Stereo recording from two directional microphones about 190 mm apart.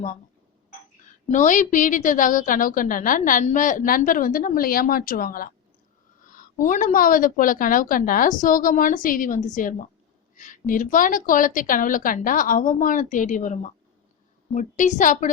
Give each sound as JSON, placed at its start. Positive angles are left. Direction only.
{"t": 1.3, "sound": "a woman's voice", "side_deg": 40}